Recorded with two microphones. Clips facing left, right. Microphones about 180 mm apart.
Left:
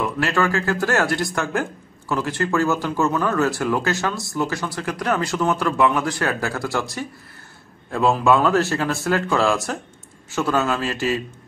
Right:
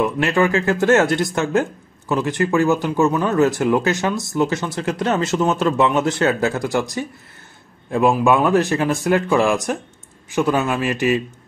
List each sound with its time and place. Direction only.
0.0 s speech: 20° right (ahead or behind)